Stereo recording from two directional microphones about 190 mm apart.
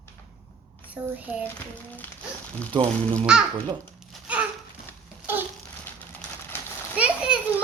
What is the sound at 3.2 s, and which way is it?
Speech, 5° right (ahead or behind).